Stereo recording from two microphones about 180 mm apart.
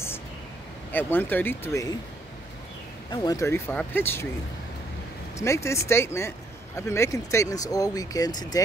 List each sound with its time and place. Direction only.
0.9 s speech: 10° left (ahead or behind)
3.1 s speech: 20° left (ahead or behind)
5.4 s speech: 15° left (ahead or behind)